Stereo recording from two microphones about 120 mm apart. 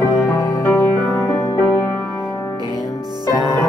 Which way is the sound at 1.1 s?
30° left (ahead or behind).